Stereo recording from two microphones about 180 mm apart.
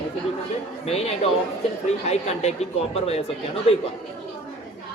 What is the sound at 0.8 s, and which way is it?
Speech, 35° left (ahead or behind).